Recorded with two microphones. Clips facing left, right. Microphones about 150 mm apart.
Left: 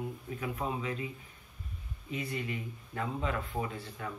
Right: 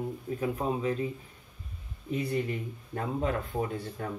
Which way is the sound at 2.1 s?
40° right (ahead or behind).